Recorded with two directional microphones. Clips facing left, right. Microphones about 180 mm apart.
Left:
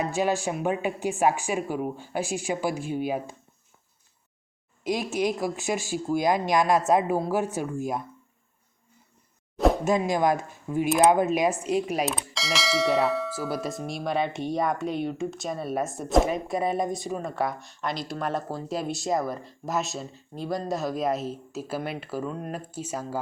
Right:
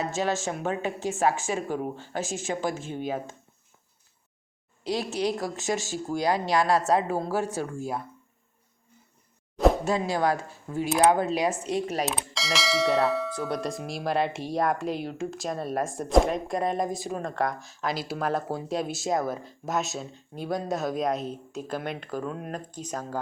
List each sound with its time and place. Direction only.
0.0 s speech: 15° left (ahead or behind)
4.8 s speech: 15° left (ahead or behind)
9.8 s speech: 15° left (ahead or behind)
12.0 s bell: centre (ahead or behind)